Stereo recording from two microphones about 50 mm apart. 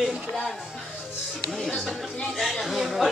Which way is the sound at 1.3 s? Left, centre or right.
Centre.